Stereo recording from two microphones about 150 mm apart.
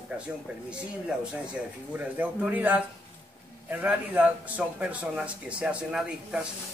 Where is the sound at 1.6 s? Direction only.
5° right (ahead or behind).